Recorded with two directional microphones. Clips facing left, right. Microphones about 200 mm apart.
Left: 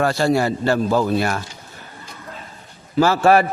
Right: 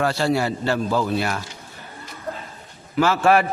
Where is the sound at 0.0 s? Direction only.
45° left (ahead or behind).